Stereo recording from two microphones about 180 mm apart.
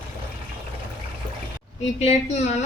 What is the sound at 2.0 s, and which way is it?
Speech, 35° left (ahead or behind).